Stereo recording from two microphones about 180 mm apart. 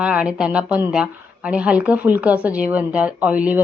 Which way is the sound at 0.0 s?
5° right (ahead or behind).